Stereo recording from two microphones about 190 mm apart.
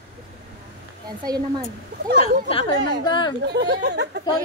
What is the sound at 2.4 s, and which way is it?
Speech, 30° left (ahead or behind).